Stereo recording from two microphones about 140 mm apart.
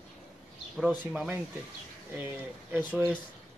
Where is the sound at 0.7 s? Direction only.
Centre (ahead or behind).